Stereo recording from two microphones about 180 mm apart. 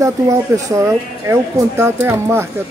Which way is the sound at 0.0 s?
15° right (ahead or behind).